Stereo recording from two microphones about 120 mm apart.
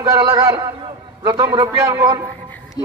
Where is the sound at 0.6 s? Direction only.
35° right (ahead or behind).